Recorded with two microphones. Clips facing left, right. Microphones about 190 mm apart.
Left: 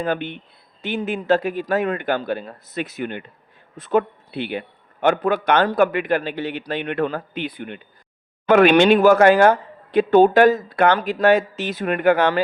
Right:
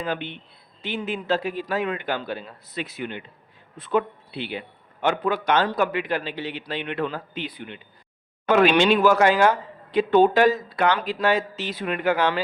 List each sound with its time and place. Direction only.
0.0 s a man's voice: 50° left (ahead or behind)